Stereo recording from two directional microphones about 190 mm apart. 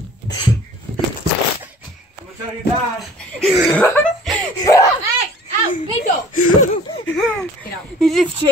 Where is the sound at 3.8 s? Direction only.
5° left (ahead or behind).